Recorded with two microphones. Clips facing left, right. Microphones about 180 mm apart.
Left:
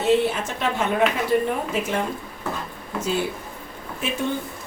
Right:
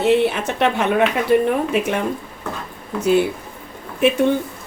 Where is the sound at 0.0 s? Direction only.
65° right (ahead or behind).